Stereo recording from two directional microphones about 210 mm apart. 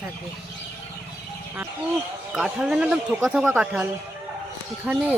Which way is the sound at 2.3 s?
5° right (ahead or behind).